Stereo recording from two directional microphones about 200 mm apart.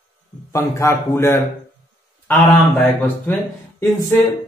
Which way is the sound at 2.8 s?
10° left (ahead or behind).